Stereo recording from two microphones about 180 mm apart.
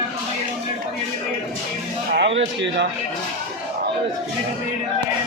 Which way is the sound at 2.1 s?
80° right.